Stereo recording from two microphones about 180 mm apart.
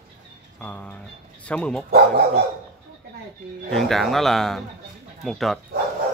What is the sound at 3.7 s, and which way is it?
Speech, centre (ahead or behind).